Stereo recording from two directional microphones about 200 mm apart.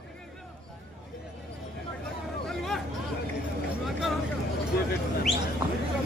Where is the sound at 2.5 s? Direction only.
Centre (ahead or behind).